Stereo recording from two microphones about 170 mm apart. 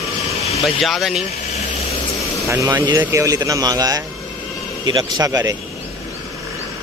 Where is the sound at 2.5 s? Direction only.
15° right (ahead or behind).